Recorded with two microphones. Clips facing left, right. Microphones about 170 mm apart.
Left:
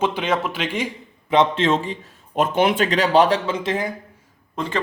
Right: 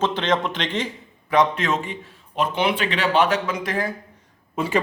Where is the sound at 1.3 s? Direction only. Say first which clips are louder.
Left 2 dB; 25° left (ahead or behind).